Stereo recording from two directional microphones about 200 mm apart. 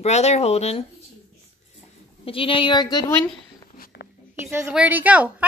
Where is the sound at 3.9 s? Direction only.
55° left (ahead or behind).